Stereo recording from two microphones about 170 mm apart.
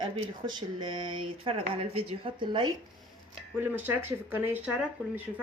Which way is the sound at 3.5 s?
10° right (ahead or behind).